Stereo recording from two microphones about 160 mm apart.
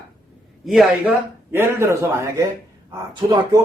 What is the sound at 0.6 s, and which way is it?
Speech, centre (ahead or behind).